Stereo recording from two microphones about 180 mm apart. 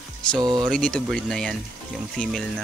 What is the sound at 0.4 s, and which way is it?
Speech, 25° right (ahead or behind).